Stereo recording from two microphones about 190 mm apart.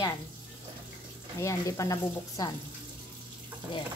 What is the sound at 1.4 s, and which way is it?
A woman's voice, 15° left (ahead or behind).